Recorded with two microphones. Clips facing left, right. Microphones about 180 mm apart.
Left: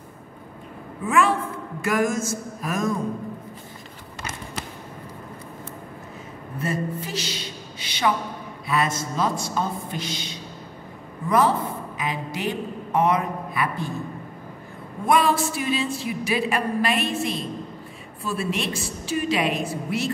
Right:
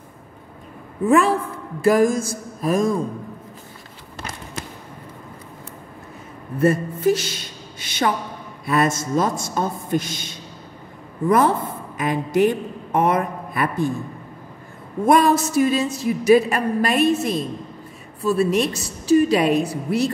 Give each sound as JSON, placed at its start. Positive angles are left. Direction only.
{"t": 1.0, "sound": "a woman's voice", "side_deg": -35}
{"t": 6.6, "sound": "a woman's voice", "side_deg": -50}
{"t": 15.0, "sound": "a woman's voice", "side_deg": -40}